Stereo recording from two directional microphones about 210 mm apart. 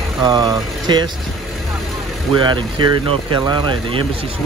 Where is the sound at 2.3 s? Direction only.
20° right (ahead or behind).